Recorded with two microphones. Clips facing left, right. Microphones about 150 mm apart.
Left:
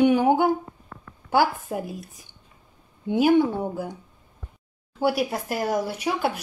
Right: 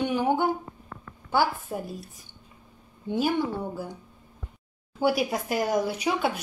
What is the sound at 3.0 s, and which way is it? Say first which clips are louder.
Speech: left 7 dB; 15° left (ahead or behind).